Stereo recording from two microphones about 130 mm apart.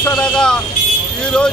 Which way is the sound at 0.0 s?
5° left (ahead or behind).